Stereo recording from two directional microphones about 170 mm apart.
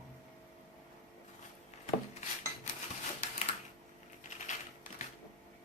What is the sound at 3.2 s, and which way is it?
Typewriter, 40° left (ahead or behind).